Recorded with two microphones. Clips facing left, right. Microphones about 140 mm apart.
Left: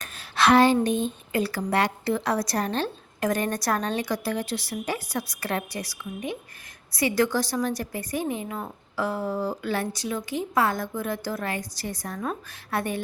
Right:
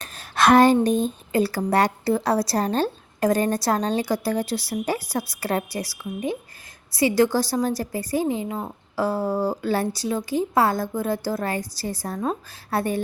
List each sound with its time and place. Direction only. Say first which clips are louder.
0.0 s a sound: right 3 dB; 40° right (ahead or behind)
0.9 s a woman's voice: right 4 dB; 40° right (ahead or behind); by 8.7 s 25° right (ahead or behind)
9.0 s a woman's voice: right 4 dB; 35° right (ahead or behind)